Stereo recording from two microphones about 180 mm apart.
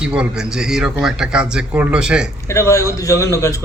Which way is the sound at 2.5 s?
15° left (ahead or behind).